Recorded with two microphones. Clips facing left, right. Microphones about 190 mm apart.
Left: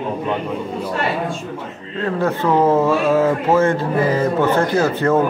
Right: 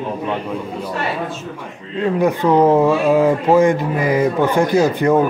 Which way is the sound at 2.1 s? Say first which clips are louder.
Right 3 dB; 15° right (ahead or behind).